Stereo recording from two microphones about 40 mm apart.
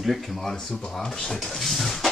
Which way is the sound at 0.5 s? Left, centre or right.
Centre.